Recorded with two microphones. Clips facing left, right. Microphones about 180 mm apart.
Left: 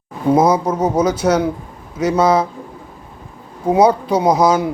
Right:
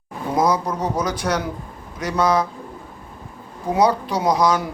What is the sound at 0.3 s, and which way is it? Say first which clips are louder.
A man's voice: left 4 dB; 25° left (ahead or behind).